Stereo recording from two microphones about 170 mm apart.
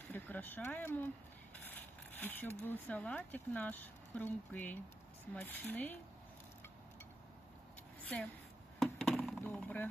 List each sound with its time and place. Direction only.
0.1 s speech: 10° left (ahead or behind)
8.8 s chop: centre (ahead or behind)